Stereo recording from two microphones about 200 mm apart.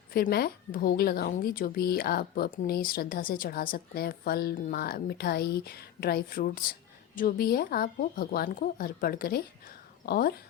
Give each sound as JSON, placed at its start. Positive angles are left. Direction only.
{"t": 0.1, "sound": "a woman's voice", "side_deg": 50}